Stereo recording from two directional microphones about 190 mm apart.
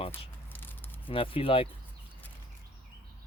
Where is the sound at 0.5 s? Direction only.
10° left (ahead or behind).